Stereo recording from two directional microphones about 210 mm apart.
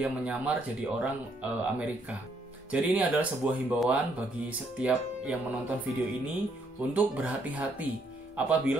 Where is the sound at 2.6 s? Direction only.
10° right (ahead or behind).